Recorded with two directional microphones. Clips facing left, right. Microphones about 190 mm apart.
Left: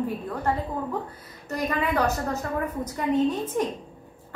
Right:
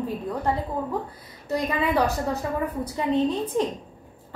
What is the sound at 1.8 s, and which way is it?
Speech, 10° right (ahead or behind).